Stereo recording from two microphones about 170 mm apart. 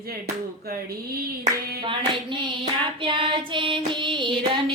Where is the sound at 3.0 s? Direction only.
30° right (ahead or behind).